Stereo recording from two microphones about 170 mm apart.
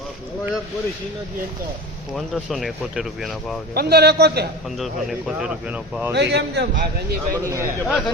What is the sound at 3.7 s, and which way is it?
Speech, 70° right (ahead or behind).